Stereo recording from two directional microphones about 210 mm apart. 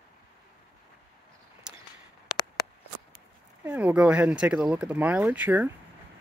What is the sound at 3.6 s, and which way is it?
Speech, 5° right (ahead or behind).